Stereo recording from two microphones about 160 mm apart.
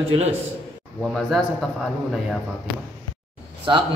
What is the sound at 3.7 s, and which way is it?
Speech, 30° right (ahead or behind).